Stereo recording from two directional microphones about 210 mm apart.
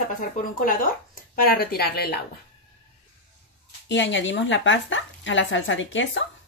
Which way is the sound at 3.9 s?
60° left (ahead or behind).